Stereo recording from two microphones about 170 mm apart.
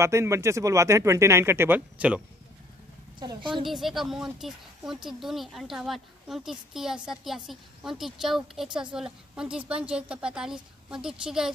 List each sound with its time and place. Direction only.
0.0 s speech: 15° right (ahead or behind)
3.2 s a woman's voice: 25° right (ahead or behind)
3.6 s speech: centre (ahead or behind)